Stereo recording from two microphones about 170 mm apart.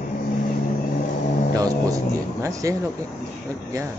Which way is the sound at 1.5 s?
20° right (ahead or behind).